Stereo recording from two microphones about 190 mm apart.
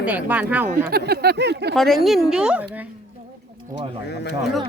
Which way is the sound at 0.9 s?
55° right (ahead or behind).